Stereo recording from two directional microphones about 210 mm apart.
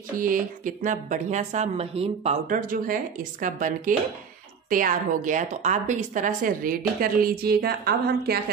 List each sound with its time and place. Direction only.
0.1 s speech: 40° right (ahead or behind)